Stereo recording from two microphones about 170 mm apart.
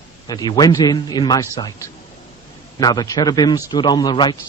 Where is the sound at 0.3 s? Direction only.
25° left (ahead or behind).